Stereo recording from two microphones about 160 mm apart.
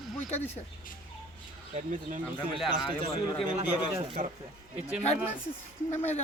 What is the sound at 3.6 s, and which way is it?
Speech, 35° right (ahead or behind).